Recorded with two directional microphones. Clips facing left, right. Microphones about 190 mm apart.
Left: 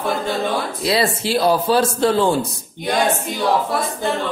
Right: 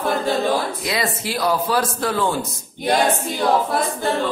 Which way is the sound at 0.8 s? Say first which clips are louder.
Left 5 dB; 30° left (ahead or behind).